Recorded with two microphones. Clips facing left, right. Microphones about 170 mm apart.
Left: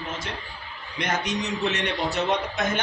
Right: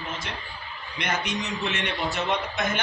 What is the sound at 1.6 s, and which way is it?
A man's voice, 35° left (ahead or behind).